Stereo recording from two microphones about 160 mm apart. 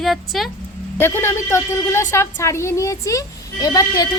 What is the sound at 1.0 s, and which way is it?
A woman's voice, 15° left (ahead or behind).